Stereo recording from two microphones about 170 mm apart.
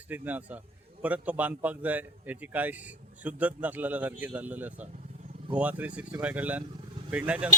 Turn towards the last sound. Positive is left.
turn(degrees=-10)  # may be behind; listen again after turning